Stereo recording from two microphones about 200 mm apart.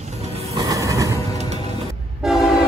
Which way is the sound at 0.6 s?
15° right (ahead or behind).